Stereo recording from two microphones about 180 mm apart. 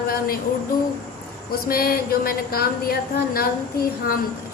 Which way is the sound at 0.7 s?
50° left (ahead or behind).